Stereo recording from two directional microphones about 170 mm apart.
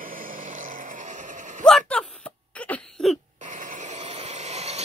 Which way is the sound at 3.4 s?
50° right (ahead or behind).